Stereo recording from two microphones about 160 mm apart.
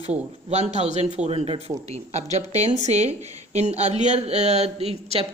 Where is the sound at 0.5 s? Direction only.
45° right (ahead or behind).